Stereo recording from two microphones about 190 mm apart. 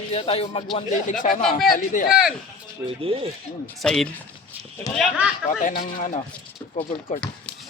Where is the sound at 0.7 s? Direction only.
40° left (ahead or behind).